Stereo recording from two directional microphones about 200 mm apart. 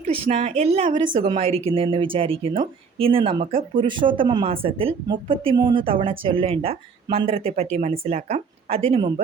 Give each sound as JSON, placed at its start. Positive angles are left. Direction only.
{"t": 0.0, "sound": "a woman's voice", "side_deg": -35}